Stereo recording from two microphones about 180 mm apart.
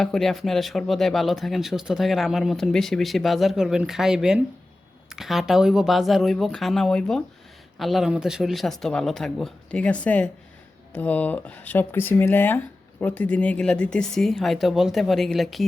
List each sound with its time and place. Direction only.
0.0 s speech: centre (ahead or behind)